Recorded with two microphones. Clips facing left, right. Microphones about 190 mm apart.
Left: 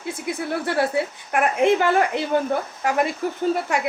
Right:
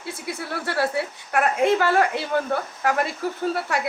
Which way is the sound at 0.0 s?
15° left (ahead or behind).